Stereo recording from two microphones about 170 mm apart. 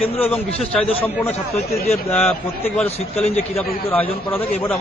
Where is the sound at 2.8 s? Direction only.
35° left (ahead or behind).